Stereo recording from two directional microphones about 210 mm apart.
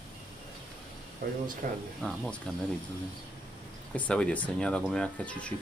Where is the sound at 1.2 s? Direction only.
45° right (ahead or behind).